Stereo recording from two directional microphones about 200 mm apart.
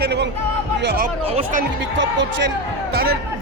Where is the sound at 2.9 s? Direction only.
50° right (ahead or behind).